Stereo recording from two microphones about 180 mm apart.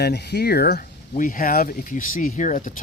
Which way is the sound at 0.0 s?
65° left (ahead or behind).